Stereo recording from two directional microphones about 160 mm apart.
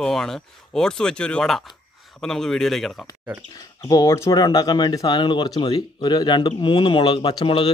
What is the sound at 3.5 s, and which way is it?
Speech, 20° left (ahead or behind).